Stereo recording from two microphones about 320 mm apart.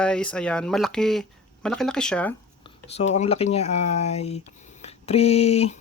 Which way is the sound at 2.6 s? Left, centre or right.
Centre.